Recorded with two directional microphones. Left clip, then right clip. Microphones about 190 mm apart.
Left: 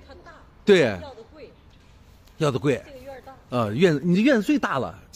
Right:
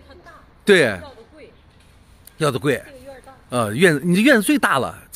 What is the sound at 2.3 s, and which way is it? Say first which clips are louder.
Speech: right 3 dB; centre (ahead or behind).